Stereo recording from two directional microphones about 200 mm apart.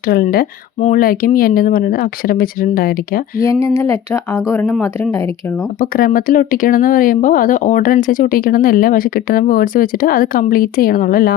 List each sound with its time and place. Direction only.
0.0 s speech: 50° left (ahead or behind)
3.4 s speech: 15° left (ahead or behind)
5.8 s speech: 45° left (ahead or behind)